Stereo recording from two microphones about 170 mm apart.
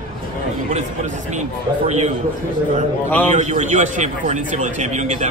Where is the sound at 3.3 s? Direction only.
45° right (ahead or behind).